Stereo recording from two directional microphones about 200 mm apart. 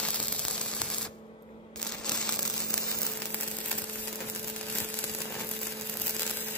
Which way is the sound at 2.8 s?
15° left (ahead or behind).